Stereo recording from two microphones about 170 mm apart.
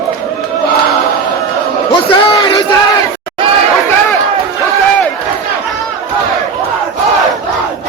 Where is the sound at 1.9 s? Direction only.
30° left (ahead or behind).